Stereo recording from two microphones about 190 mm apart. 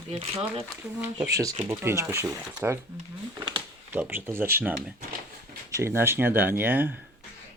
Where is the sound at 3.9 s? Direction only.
10° right (ahead or behind).